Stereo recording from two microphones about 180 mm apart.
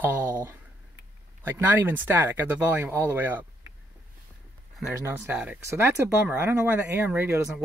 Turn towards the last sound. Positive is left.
turn(degrees=-10)  # may be behind; listen again after turning